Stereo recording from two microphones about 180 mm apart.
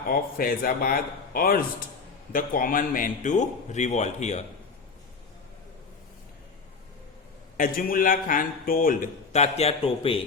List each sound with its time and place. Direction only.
0.1 s a man's voice: 55° left (ahead or behind)
7.5 s a man's voice: 50° left (ahead or behind); by 10.2 s 30° left (ahead or behind)